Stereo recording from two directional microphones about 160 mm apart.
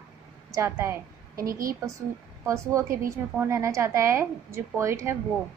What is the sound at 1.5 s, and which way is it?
Speech, 60° right (ahead or behind).